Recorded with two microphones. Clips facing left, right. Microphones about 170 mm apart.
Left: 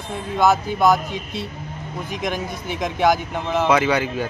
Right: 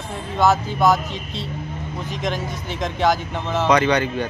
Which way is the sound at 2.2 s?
10° left (ahead or behind).